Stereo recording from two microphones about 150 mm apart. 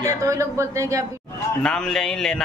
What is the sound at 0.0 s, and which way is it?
A woman's voice, 20° right (ahead or behind).